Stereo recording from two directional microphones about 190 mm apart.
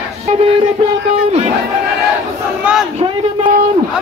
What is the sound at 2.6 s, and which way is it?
Crowd, 5° right (ahead or behind).